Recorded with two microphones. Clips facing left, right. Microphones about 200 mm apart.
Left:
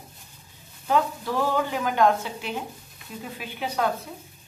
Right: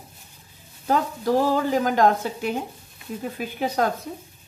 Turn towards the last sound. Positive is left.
turn(degrees=-45)  # may be behind; listen again after turning